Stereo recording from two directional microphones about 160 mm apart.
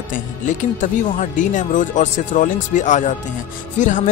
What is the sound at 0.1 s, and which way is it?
Speech, 50° left (ahead or behind).